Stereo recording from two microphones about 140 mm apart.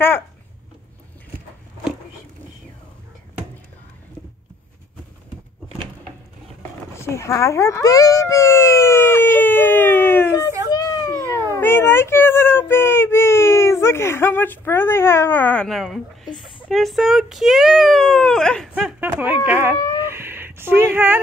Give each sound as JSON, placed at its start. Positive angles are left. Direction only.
{"t": 7.0, "sound": "speech", "side_deg": 20}
{"t": 10.7, "sound": "a sound", "side_deg": 25}
{"t": 11.5, "sound": "a child's voice", "side_deg": 15}
{"t": 18.8, "sound": "speech", "side_deg": -10}